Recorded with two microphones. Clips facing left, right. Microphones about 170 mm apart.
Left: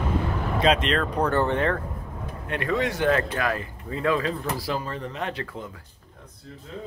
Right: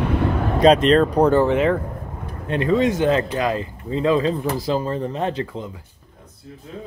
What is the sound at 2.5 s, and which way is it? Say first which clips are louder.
Speech: right 7 dB; 25° right (ahead or behind).